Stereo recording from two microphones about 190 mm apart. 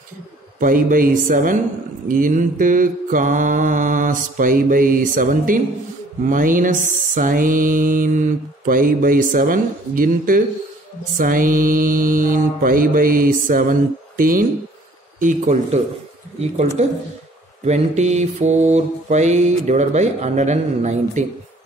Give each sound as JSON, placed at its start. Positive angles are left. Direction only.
{"t": 0.6, "sound": "mantra", "side_deg": -45}